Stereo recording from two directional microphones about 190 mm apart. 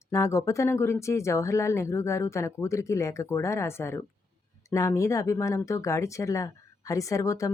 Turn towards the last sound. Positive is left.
turn(degrees=15)  # may be behind; listen again after turning